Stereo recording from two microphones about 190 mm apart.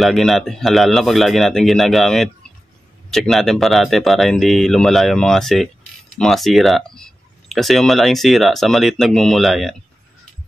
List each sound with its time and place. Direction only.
0.0 s speech: centre (ahead or behind)